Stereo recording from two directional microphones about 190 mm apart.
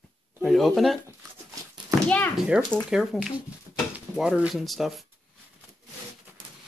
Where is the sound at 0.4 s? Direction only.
Centre (ahead or behind).